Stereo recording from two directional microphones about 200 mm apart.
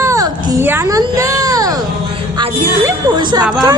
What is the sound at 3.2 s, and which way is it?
Speech, 20° right (ahead or behind).